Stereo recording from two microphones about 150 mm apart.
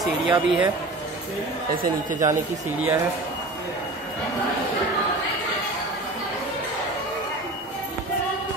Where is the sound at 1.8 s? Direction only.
60° right (ahead or behind).